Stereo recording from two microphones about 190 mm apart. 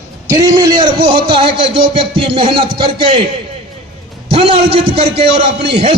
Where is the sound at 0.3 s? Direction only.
20° right (ahead or behind).